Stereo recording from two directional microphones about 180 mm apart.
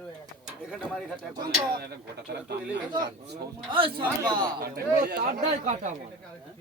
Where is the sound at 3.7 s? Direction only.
30° right (ahead or behind).